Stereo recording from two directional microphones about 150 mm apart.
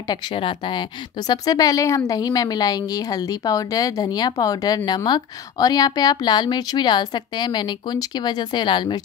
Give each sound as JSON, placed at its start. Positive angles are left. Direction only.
{"t": 0.1, "sound": "speech", "side_deg": 35}